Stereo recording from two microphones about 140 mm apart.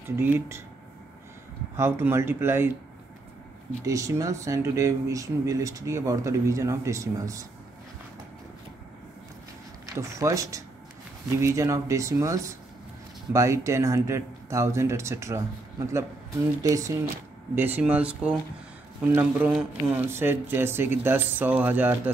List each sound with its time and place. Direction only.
0.1 s speech: 15° right (ahead or behind)
1.8 s speech: 15° right (ahead or behind)
3.8 s speech: 25° right (ahead or behind)
9.8 s speech: 20° right (ahead or behind)
17.6 s speech: 15° right (ahead or behind)